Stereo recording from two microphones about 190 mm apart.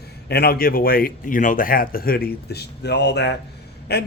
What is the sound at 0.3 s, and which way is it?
Speech, 55° left (ahead or behind).